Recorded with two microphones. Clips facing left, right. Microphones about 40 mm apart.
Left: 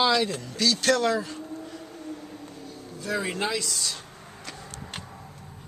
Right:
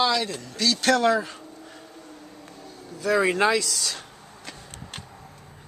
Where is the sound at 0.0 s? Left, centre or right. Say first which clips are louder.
Left 1 dB; centre.